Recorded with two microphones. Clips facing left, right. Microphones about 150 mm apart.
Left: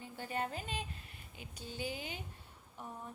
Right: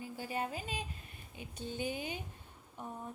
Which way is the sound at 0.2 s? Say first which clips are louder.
Even; 10° right (ahead or behind).